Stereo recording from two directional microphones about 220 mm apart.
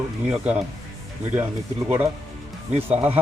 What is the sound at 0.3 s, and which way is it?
Speech, 5° right (ahead or behind).